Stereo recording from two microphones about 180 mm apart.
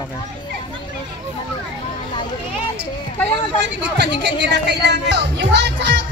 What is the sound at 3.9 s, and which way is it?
Speech, 70° right (ahead or behind).